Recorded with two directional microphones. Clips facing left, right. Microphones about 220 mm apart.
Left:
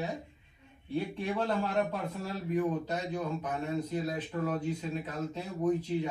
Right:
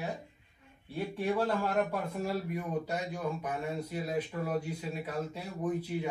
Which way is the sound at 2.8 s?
10° right (ahead or behind).